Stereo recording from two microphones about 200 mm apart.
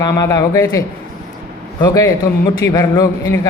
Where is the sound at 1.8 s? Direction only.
15° left (ahead or behind).